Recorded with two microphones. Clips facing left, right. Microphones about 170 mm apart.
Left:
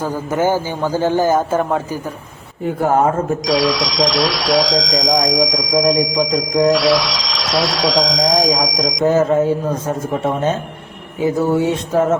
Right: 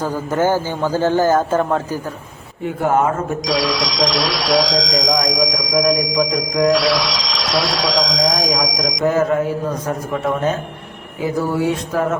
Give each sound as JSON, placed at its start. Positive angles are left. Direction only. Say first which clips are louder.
{"t": 0.0, "sound": "a man's voice", "louder": "even", "side_deg": 10}
{"t": 2.8, "sound": "speech", "louder": "left 1 dB", "side_deg": 35}
{"t": 3.4, "sound": "speech", "louder": "left 3 dB", "side_deg": 0}
{"t": 9.0, "sound": "speech", "louder": "left 3 dB", "side_deg": 25}